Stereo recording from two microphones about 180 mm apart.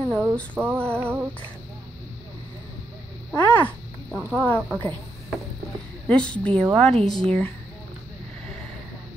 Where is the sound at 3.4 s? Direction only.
10° left (ahead or behind).